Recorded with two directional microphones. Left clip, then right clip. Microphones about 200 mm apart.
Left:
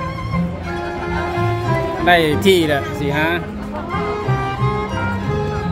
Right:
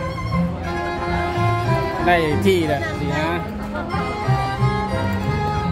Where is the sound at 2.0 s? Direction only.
20° left (ahead or behind).